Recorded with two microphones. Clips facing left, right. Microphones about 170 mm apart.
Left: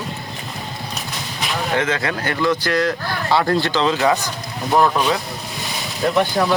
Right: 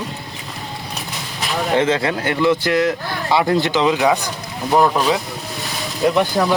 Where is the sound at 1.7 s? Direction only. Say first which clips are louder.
Right 5 dB; 30° right (ahead or behind).